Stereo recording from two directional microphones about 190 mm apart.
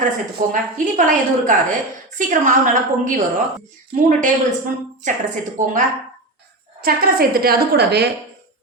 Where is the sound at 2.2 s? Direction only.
45° right (ahead or behind).